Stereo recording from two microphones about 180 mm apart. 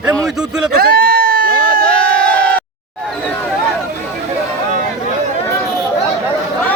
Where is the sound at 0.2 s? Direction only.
5° right (ahead or behind).